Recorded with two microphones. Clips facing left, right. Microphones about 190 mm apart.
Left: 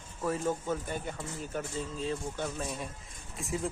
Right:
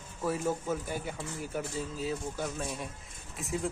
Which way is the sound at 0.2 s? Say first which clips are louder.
Even; 10° right (ahead or behind).